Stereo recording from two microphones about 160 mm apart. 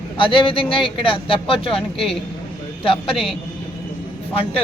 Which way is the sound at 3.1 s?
Centre (ahead or behind).